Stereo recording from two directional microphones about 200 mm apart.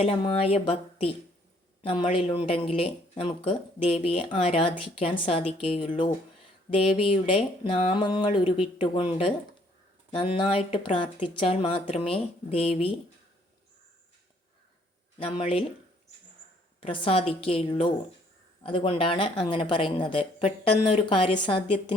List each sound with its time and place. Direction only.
0.0 s speech: 30° left (ahead or behind)
15.2 s speech: 30° left (ahead or behind)
16.8 s speech: 25° left (ahead or behind)